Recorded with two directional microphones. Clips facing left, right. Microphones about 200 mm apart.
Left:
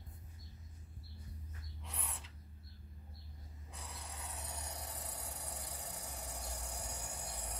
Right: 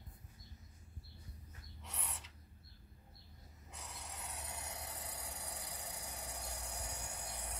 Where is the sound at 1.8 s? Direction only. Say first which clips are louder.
Even; 5° right (ahead or behind).